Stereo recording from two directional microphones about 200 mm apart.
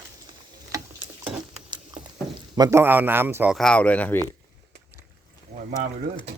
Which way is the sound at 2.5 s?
15° right (ahead or behind).